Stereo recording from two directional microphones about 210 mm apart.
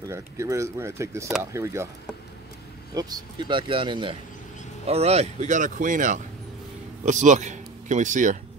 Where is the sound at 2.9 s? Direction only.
20° right (ahead or behind).